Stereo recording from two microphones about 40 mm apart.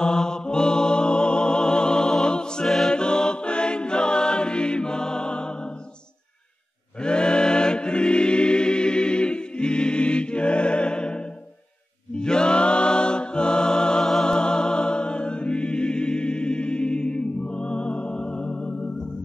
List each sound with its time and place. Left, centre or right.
0.0 s music: centre
7.0 s choir: left
14.3 s music: centre